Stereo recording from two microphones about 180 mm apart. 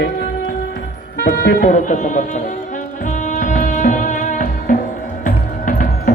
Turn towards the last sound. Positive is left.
turn(degrees=50)  # may be behind; listen again after turning